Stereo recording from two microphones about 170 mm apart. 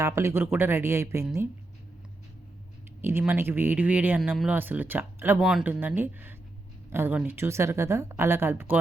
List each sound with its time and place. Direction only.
0.0 s speech: 15° right (ahead or behind)
3.0 s speech: 15° right (ahead or behind)